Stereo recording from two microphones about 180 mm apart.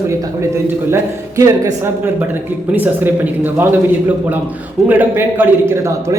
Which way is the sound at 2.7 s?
10° right (ahead or behind).